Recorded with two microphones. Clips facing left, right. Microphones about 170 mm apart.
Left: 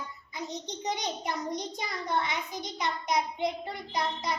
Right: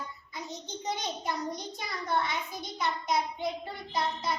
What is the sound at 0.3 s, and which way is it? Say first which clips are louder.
Child singing: left 3 dB; 20° left (ahead or behind).